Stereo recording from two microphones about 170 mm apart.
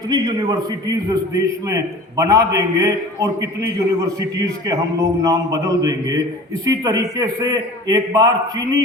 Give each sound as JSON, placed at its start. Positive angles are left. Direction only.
{"t": 0.1, "sound": "a man's voice", "side_deg": -20}